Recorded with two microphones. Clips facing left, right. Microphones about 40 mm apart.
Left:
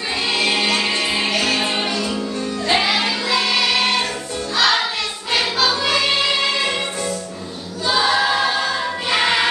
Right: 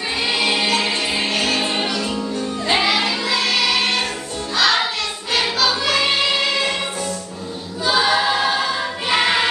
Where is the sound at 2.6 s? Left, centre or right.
Centre.